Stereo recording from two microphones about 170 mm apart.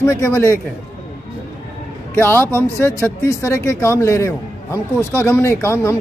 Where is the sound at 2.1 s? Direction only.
10° left (ahead or behind).